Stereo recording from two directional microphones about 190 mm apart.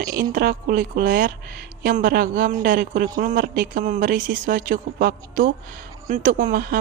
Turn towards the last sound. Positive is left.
turn(degrees=-45)  # may be behind; listen again after turning